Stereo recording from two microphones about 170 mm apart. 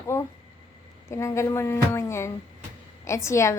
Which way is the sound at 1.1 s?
15° left (ahead or behind).